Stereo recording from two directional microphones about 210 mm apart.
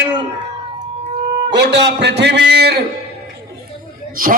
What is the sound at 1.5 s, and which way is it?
A man's voice, 55° right (ahead or behind).